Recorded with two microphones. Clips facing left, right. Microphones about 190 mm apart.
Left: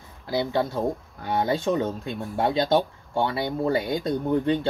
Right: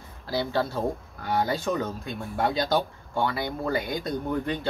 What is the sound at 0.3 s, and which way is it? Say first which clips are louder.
Speech: left 2 dB; 20° left (ahead or behind).